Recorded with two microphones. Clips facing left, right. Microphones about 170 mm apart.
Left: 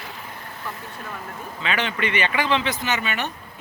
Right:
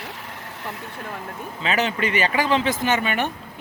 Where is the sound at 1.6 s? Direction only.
40° right (ahead or behind).